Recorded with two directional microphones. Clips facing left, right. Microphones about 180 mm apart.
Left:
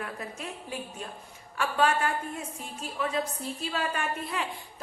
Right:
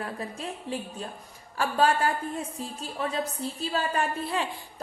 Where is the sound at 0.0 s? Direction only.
30° right (ahead or behind).